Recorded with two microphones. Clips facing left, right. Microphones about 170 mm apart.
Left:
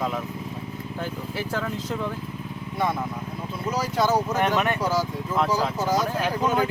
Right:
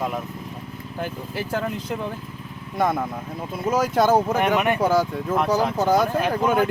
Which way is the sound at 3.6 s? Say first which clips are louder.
Right 5 dB; 50° right (ahead or behind).